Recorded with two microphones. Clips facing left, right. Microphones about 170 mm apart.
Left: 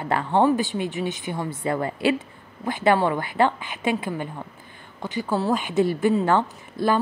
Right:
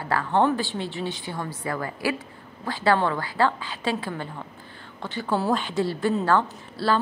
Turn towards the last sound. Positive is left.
turn(degrees=15)  # may be behind; listen again after turning